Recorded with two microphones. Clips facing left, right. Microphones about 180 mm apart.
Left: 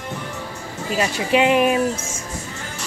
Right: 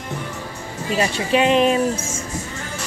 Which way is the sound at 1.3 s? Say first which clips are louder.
Even; 15° left (ahead or behind).